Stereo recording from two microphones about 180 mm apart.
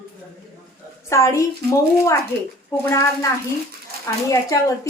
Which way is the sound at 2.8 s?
15° left (ahead or behind).